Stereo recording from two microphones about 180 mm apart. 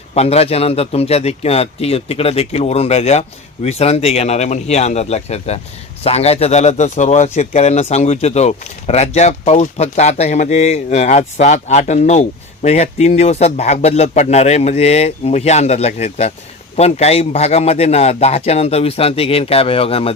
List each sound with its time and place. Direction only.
0.1 s a man's voice: 35° left (ahead or behind)